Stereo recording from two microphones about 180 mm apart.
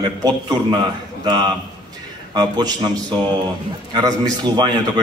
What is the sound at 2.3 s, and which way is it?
A man's voice, 25° right (ahead or behind).